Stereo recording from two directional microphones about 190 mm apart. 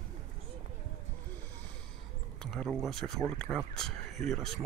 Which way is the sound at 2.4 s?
5° left (ahead or behind).